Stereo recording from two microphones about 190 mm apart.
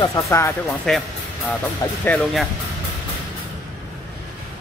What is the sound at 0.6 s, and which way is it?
Speech, centre (ahead or behind).